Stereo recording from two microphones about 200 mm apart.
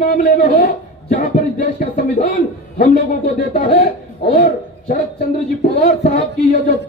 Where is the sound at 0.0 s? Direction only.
45° left (ahead or behind).